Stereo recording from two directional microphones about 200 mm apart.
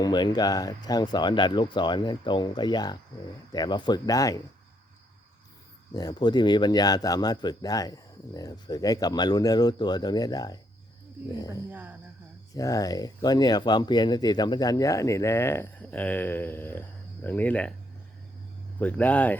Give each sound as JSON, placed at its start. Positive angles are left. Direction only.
{"t": 0.0, "sound": "speech", "side_deg": 20}
{"t": 5.9, "sound": "speech", "side_deg": 20}
{"t": 11.7, "sound": "speech", "side_deg": -10}
{"t": 12.5, "sound": "speech", "side_deg": 15}
{"t": 18.8, "sound": "speech", "side_deg": 5}